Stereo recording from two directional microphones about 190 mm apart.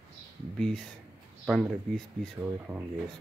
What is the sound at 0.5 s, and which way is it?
Speech, 5° left (ahead or behind).